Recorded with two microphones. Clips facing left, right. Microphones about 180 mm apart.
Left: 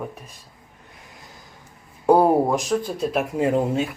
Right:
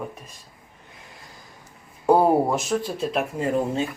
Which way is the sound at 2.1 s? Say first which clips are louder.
Left 1 dB; centre (ahead or behind).